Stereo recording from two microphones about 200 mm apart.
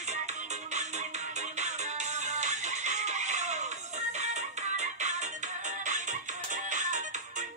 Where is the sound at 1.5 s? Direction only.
35° right (ahead or behind).